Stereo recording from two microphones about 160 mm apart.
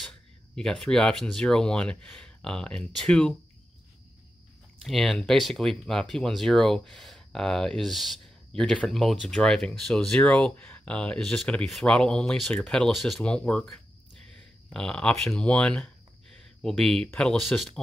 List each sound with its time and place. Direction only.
0.6 s speech: 5° left (ahead or behind)
4.8 s speech: 5° left (ahead or behind)